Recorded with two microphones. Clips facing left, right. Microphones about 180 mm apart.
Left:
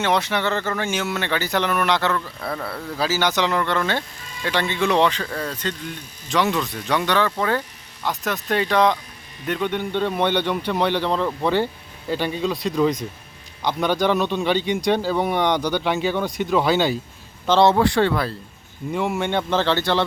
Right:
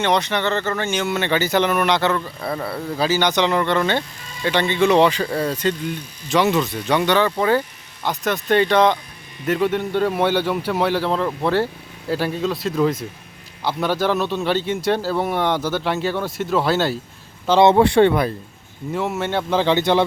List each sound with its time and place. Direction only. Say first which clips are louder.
0.0 s speech: right 2 dB; 5° left (ahead or behind)
5.2 s speech: right 6 dB; 15° right (ahead or behind)
17.6 s speech: right 4 dB; 20° right (ahead or behind)
18.9 s speech: even; 5° right (ahead or behind)